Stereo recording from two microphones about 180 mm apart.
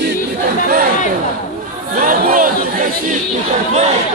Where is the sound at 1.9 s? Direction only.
50° right (ahead or behind).